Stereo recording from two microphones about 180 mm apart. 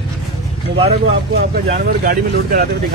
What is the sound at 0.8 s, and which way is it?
Speech, 35° right (ahead or behind).